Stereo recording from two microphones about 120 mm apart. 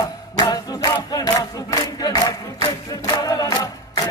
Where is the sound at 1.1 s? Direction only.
30° left (ahead or behind).